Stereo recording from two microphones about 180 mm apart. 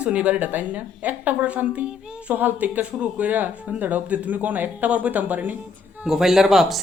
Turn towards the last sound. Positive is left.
turn(degrees=0)  # may be behind; listen again after turning